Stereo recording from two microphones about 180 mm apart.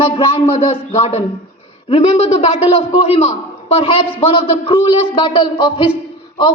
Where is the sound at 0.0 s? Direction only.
30° left (ahead or behind).